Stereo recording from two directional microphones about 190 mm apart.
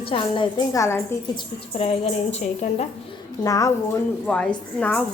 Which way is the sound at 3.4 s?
15° left (ahead or behind).